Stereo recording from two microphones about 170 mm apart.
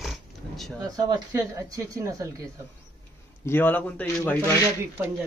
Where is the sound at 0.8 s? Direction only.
25° right (ahead or behind).